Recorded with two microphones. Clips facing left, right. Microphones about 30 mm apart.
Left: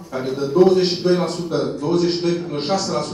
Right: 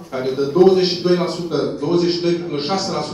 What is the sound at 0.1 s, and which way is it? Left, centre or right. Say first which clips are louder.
A man's voice: right 2 dB; centre.